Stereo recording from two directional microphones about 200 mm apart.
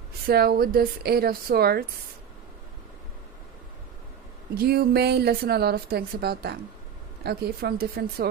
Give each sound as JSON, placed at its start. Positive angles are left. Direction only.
{"t": 0.3, "sound": "a woman's voice", "side_deg": -50}
{"t": 4.6, "sound": "a woman's voice", "side_deg": -50}